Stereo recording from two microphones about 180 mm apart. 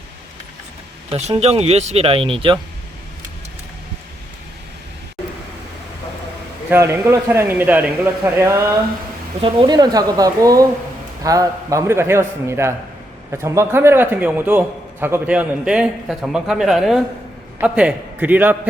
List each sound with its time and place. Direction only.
1.1 s speech: 35° right (ahead or behind)
6.7 s a man's voice: 15° right (ahead or behind)
9.4 s a man's voice: 25° right (ahead or behind); by 18.7 s 10° right (ahead or behind)